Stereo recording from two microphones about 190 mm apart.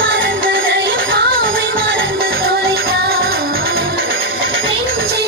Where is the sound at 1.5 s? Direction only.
80° right.